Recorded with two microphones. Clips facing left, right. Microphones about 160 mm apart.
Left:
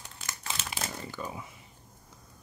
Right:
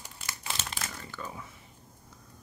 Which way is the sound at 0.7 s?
25° left (ahead or behind).